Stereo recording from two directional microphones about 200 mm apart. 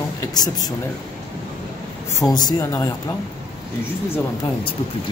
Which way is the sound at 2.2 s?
20° left (ahead or behind).